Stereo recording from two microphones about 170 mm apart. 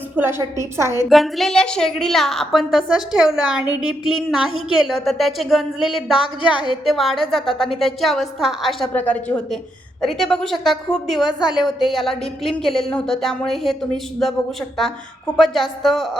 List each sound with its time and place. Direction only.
0.2 s a woman's voice: 10° right (ahead or behind)
1.1 s a woman's voice: centre (ahead or behind)
15.4 s a woman's voice: centre (ahead or behind)